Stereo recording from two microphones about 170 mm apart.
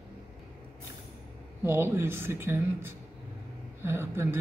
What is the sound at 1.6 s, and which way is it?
Speech, 15° right (ahead or behind).